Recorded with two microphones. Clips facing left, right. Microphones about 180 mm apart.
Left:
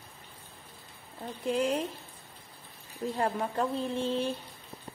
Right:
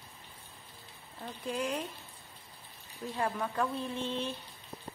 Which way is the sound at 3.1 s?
35° left (ahead or behind).